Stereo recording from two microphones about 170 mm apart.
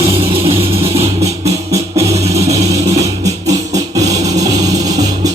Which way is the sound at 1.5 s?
20° right (ahead or behind).